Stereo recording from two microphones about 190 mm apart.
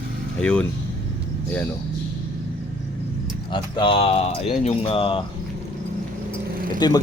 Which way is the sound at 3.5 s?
25° left (ahead or behind).